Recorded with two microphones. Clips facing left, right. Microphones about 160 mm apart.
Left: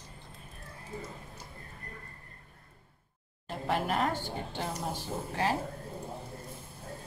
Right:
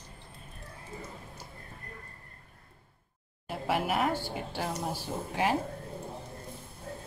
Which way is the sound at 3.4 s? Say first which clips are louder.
Right 1 dB; 5° right (ahead or behind).